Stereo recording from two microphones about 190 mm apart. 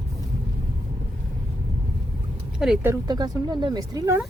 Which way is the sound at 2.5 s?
5° right (ahead or behind).